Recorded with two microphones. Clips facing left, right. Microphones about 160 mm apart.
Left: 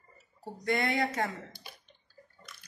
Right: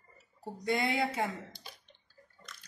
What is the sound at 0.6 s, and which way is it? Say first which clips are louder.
Speech: left 1 dB; 10° right (ahead or behind).